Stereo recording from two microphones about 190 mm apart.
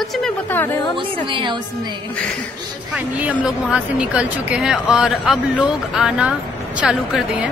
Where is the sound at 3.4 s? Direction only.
5° right (ahead or behind).